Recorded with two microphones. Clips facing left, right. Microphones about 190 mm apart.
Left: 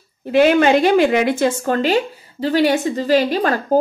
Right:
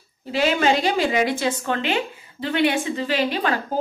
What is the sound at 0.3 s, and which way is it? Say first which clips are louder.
A woman's voice: left 7 dB; 55° left (ahead or behind).